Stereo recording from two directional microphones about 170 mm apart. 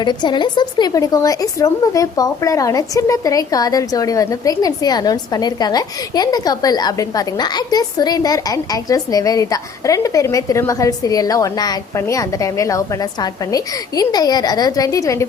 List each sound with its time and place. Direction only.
0.0 s a woman's voice: 25° left (ahead or behind)